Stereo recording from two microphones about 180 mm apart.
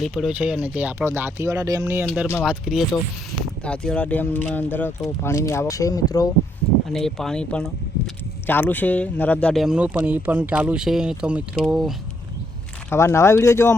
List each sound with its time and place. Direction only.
0.0 s speech: 5° right (ahead or behind)
2.4 s speech: 5° right (ahead or behind); by 6.2 s 20° left (ahead or behind)
6.9 s speech: centre (ahead or behind)
12.9 s speech: 15° left (ahead or behind)